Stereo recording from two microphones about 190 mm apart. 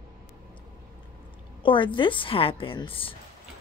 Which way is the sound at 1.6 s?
25° left (ahead or behind).